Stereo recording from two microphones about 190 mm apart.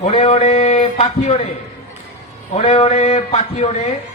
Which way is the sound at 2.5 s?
35° left (ahead or behind).